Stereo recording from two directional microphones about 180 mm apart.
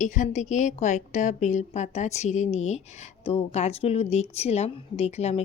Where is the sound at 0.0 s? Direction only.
45° left (ahead or behind).